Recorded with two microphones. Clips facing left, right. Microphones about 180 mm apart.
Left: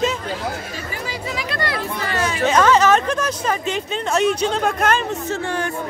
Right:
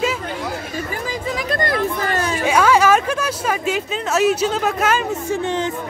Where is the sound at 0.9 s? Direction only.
45° right (ahead or behind).